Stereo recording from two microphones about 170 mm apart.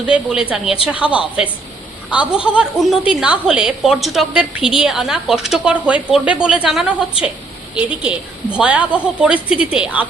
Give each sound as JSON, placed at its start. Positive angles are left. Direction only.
{"t": 0.0, "sound": "a woman's voice", "side_deg": -5}